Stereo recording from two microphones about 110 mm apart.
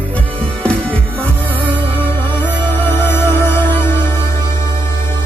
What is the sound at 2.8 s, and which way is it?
Music, 20° left (ahead or behind).